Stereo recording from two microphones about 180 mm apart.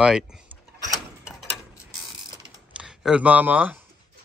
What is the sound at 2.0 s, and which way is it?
Mechanisms, 5° right (ahead or behind).